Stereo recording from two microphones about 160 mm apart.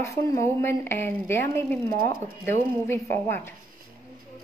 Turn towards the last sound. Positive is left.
turn(degrees=15)  # may be behind; listen again after turning